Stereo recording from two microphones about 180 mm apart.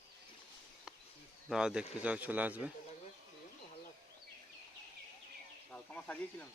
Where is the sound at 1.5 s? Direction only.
5° right (ahead or behind).